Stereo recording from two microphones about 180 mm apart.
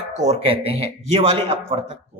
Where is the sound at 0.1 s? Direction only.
40° right (ahead or behind).